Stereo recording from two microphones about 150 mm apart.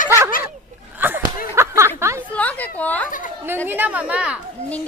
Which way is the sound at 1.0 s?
10° right (ahead or behind).